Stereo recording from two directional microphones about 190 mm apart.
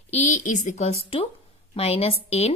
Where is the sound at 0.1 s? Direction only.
40° left (ahead or behind).